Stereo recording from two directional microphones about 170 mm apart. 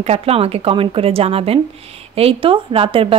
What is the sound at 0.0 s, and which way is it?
A woman's voice, 35° right (ahead or behind).